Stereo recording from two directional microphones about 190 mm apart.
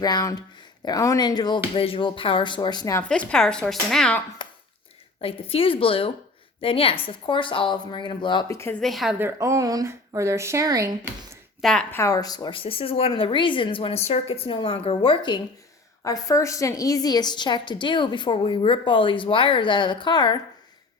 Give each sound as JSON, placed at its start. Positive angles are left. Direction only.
{"t": 0.0, "sound": "a woman's voice", "side_deg": 20}
{"t": 4.4, "sound": "a sound", "side_deg": 25}
{"t": 5.2, "sound": "a woman's voice", "side_deg": 30}
{"t": 8.8, "sound": "speech", "side_deg": 0}
{"t": 9.1, "sound": "speech", "side_deg": -15}
{"t": 11.6, "sound": "a woman's voice", "side_deg": 5}